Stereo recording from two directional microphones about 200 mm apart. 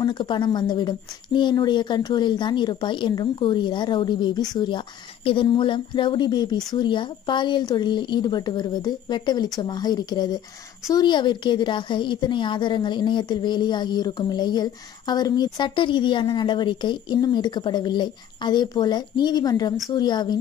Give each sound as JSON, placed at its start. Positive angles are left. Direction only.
{"t": 0.0, "sound": "a woman's voice", "side_deg": 25}